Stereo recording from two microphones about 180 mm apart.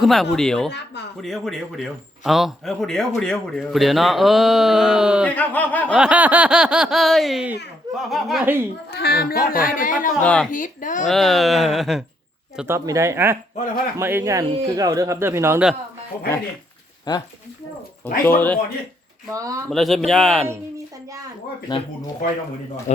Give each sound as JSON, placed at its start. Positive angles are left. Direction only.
{"t": 0.0, "sound": "speech", "side_deg": 0}
{"t": 5.2, "sound": "speech", "side_deg": 10}
{"t": 5.9, "sound": "speech", "side_deg": -5}
{"t": 8.9, "sound": "speech", "side_deg": 65}
{"t": 10.2, "sound": "speech", "side_deg": 5}
{"t": 10.5, "sound": "speech", "side_deg": 45}
{"t": 11.0, "sound": "speech", "side_deg": 0}
{"t": 12.5, "sound": "speech", "side_deg": -15}
{"t": 17.1, "sound": "speech", "side_deg": 25}
{"t": 18.3, "sound": "speech", "side_deg": 10}
{"t": 19.3, "sound": "speech", "side_deg": -20}
{"t": 19.7, "sound": "speech", "side_deg": 0}
{"t": 21.7, "sound": "speech", "side_deg": 25}